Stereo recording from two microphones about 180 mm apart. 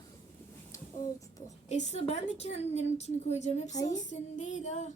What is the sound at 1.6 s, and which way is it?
A woman's voice, 40° left (ahead or behind).